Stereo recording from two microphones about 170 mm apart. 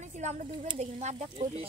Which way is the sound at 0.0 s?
45° right (ahead or behind).